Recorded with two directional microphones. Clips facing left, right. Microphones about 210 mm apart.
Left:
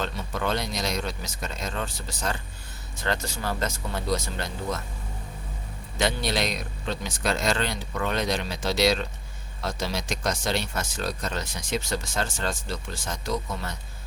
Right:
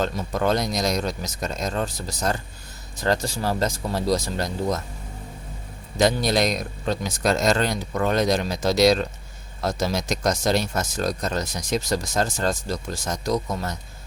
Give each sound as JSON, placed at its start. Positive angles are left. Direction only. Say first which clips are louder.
{"t": 0.0, "sound": "speech", "louder": "right 6 dB", "side_deg": -40}
{"t": 6.0, "sound": "speech", "louder": "right 6 dB", "side_deg": -40}